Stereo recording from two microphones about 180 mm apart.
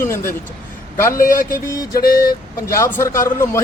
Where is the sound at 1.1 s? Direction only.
50° left (ahead or behind).